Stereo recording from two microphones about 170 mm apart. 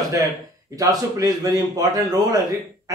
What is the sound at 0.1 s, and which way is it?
Speech, 20° right (ahead or behind).